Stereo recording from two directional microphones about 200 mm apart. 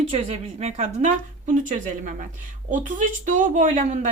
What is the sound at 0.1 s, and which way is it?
A woman's voice, 30° right (ahead or behind).